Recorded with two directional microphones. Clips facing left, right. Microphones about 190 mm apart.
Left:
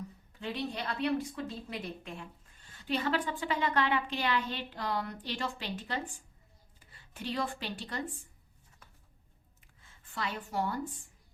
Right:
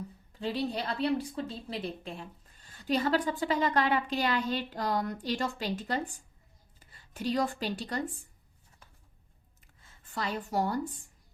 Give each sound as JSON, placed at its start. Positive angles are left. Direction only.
{"t": 0.3, "sound": "a woman's voice", "side_deg": -35}
{"t": 7.1, "sound": "a woman's voice", "side_deg": -40}
{"t": 10.0, "sound": "a woman's voice", "side_deg": -40}